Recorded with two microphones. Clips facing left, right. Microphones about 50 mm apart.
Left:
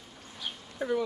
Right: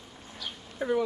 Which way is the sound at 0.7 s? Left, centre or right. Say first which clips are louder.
Right 2 dB; centre.